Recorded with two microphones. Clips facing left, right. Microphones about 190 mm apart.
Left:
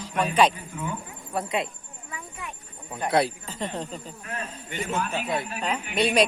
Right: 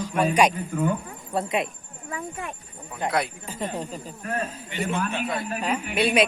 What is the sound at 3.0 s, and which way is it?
Speech, 20° right (ahead or behind).